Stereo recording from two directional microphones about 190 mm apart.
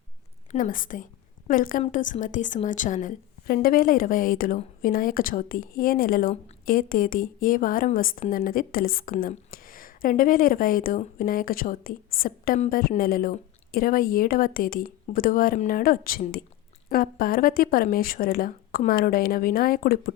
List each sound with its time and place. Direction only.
0.5 s a woman's voice: 45° left (ahead or behind)